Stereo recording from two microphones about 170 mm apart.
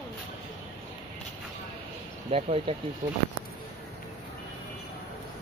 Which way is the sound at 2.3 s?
35° right (ahead or behind).